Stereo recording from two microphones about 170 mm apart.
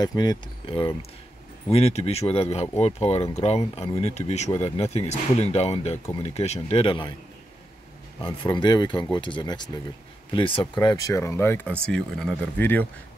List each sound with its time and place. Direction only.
0.0 s speech: 25° left (ahead or behind)
8.2 s speech: 25° left (ahead or behind); by 12.8 s 10° left (ahead or behind)